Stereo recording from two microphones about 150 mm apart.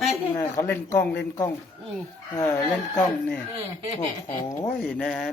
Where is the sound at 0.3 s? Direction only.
20° left (ahead or behind).